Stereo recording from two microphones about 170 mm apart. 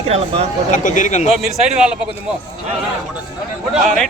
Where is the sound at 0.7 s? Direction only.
50° left (ahead or behind).